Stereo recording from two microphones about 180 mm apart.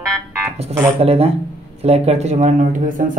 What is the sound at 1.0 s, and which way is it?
Speech, 35° right (ahead or behind).